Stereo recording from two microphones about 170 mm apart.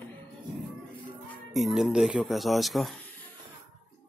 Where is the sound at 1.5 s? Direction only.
Centre (ahead or behind).